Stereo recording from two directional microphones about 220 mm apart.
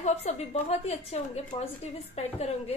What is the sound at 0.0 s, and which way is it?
A woman's voice, 30° left (ahead or behind).